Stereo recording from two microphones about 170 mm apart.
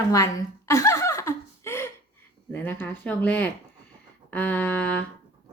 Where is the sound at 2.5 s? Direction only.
10° left (ahead or behind).